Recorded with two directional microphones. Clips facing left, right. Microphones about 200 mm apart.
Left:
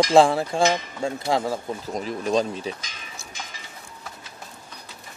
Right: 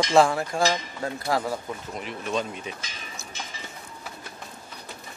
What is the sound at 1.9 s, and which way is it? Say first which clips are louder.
Speech: left 6 dB; 35° left (ahead or behind).